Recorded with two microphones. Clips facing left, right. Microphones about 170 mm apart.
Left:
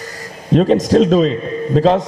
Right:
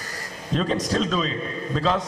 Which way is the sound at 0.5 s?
45° left (ahead or behind).